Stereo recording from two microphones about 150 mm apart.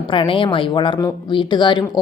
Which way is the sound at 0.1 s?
35° left (ahead or behind).